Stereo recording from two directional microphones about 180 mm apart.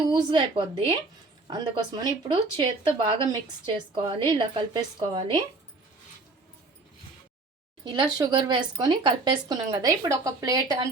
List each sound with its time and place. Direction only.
0.1 s speech: 30° right (ahead or behind)
8.2 s speech: 25° right (ahead or behind)